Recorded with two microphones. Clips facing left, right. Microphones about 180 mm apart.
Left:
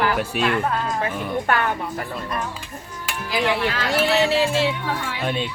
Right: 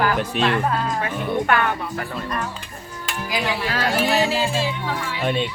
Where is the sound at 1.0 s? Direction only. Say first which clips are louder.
Right 1 dB; 35° left (ahead or behind).